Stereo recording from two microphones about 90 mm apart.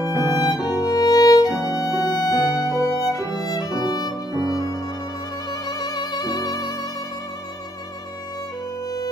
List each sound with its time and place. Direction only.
0.2 s music: 45° left (ahead or behind)